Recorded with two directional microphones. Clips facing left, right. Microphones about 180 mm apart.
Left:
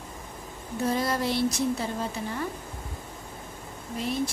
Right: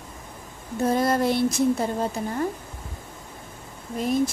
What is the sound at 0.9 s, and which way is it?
A woman's voice, 50° right (ahead or behind).